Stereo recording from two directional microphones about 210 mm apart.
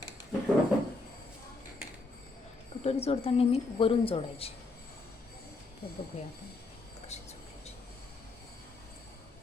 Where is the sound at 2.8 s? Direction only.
30° left (ahead or behind).